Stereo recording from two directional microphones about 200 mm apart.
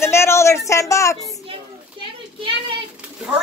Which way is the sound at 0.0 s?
15° left (ahead or behind).